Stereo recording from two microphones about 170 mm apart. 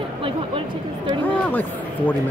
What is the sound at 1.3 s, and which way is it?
Speech, 10° left (ahead or behind).